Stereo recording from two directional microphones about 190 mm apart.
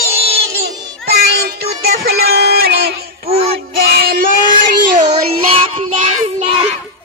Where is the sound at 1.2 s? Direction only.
55° right (ahead or behind); by 5.9 s 30° right (ahead or behind).